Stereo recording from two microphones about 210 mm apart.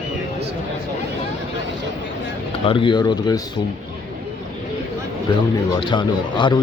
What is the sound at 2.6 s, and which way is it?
Speech, 25° left (ahead or behind).